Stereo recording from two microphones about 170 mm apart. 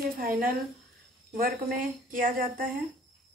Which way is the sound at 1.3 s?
55° right (ahead or behind).